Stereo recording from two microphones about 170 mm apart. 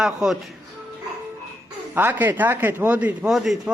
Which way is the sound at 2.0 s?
10° right (ahead or behind).